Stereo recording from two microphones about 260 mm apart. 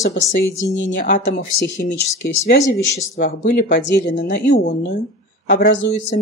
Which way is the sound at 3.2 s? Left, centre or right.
Left.